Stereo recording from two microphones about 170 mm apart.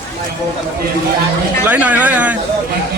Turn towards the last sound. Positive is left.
turn(degrees=-10)  # may be behind; listen again after turning